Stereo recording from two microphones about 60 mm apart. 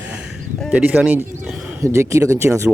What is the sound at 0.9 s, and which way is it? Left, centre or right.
Speech, right.